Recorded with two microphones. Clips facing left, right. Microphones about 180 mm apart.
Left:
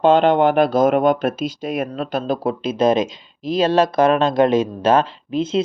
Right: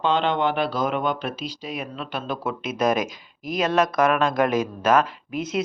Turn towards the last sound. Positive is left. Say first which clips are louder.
# left 6 dB
turn(degrees=30)  # may be behind; listen again after turning